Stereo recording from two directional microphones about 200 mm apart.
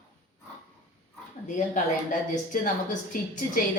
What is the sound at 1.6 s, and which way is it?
A woman's voice, 40° left (ahead or behind).